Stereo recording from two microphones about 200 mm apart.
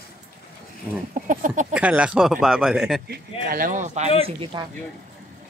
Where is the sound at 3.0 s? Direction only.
50° right (ahead or behind).